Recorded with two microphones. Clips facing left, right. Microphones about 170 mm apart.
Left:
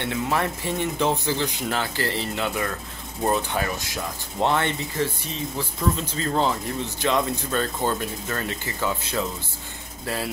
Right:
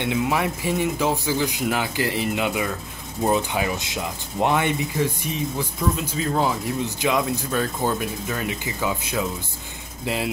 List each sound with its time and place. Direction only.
0.0 s a man's voice: 15° right (ahead or behind)